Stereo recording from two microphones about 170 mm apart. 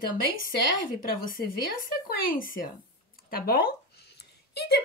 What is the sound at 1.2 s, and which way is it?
Speech, 55° left (ahead or behind).